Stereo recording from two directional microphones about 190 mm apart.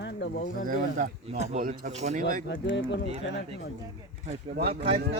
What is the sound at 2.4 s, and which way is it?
Speech, 75° left (ahead or behind).